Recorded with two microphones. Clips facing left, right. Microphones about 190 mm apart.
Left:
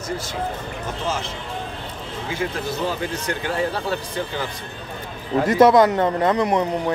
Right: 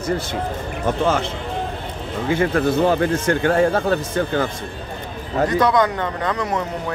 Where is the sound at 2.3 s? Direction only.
55° right (ahead or behind).